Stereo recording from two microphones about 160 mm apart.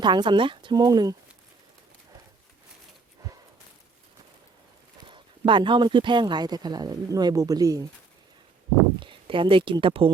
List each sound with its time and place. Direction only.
0.0 s speech: 30° right (ahead or behind)
5.0 s speech: 30° right (ahead or behind)
9.0 s speech: 30° right (ahead or behind)